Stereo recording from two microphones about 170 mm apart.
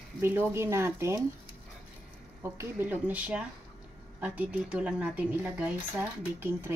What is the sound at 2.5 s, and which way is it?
Speech, 10° right (ahead or behind).